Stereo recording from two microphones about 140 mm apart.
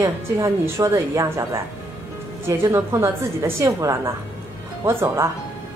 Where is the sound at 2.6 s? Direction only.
20° right (ahead or behind).